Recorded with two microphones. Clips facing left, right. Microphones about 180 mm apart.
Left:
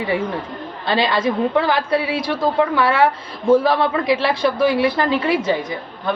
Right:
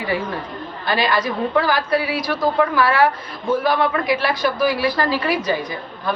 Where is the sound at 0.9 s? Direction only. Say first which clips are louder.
Left 2 dB; 25° left (ahead or behind).